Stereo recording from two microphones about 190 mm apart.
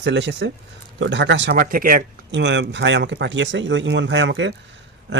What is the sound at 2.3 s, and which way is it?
Speech, 70° right (ahead or behind).